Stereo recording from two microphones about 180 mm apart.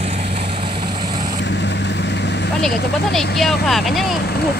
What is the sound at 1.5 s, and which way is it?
Vehicle, 75° left (ahead or behind).